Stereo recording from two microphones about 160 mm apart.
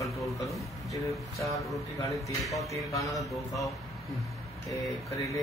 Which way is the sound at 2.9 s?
20° left (ahead or behind).